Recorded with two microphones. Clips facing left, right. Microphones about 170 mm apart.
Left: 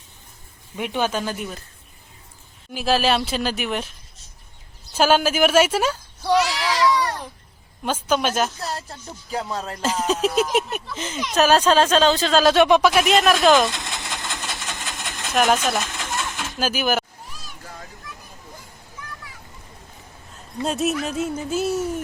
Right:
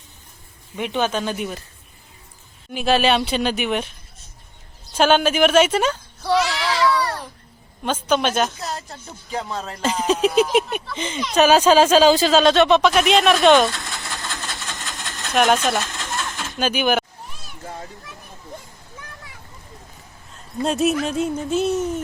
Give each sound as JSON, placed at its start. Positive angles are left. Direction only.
{"t": 0.8, "sound": "speech", "side_deg": 5}
{"t": 2.7, "sound": "speech", "side_deg": 0}
{"t": 4.9, "sound": "a woman's voice", "side_deg": 5}
{"t": 6.3, "sound": "baby cry", "side_deg": 0}
{"t": 7.0, "sound": "babbling", "side_deg": 15}
{"t": 7.9, "sound": "speech", "side_deg": 5}
{"t": 13.9, "sound": "vehicle", "side_deg": 20}
{"t": 15.3, "sound": "sewing machine", "side_deg": 0}
{"t": 20.7, "sound": "speech", "side_deg": 0}